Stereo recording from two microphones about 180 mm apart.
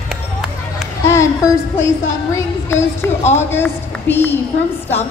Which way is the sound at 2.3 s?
15° left (ahead or behind).